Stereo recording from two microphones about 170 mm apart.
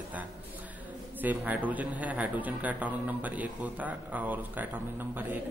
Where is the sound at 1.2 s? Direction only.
10° right (ahead or behind).